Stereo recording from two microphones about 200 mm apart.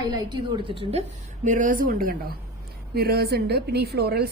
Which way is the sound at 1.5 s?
40° right (ahead or behind).